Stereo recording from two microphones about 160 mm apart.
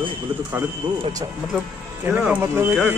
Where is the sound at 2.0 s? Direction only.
10° right (ahead or behind).